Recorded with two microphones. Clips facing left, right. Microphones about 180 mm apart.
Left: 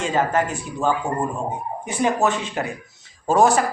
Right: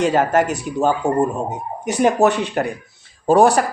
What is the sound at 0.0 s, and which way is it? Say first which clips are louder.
Speech: right 5 dB; 70° right (ahead or behind).